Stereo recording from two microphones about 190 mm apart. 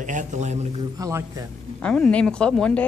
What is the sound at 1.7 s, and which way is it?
A woman's voice, 5° left (ahead or behind).